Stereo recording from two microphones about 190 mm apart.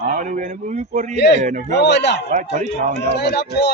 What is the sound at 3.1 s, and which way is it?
Speech, 60° left (ahead or behind).